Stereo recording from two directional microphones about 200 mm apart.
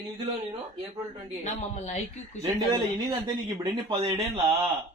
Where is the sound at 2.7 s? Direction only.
20° right (ahead or behind).